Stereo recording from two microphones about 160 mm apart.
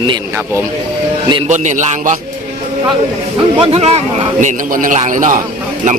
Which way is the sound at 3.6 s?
40° right (ahead or behind).